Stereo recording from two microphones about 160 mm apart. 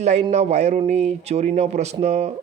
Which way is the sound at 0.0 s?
45° right (ahead or behind).